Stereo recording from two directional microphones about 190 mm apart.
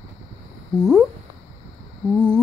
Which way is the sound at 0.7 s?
Centre (ahead or behind).